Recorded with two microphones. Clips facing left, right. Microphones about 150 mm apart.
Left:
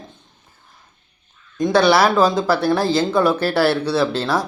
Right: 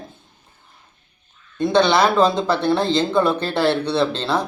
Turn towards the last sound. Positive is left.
turn(degrees=5)  # may be behind; listen again after turning